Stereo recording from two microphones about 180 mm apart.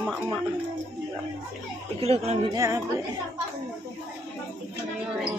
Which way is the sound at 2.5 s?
15° right (ahead or behind).